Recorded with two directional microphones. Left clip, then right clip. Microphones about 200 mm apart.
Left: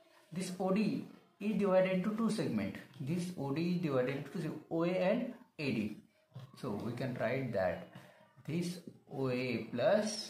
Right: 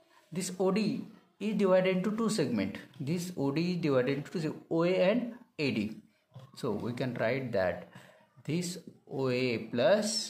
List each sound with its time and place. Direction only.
0.3 s speech: 55° right (ahead or behind)
9.1 s speech: 50° right (ahead or behind)